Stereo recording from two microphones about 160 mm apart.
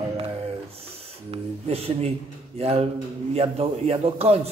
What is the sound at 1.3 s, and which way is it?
A man's voice, 40° right (ahead or behind).